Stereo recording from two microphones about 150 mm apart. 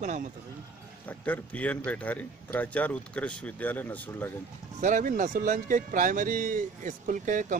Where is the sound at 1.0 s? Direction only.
10° left (ahead or behind).